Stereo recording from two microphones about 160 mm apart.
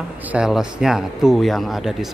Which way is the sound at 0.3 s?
5° right (ahead or behind).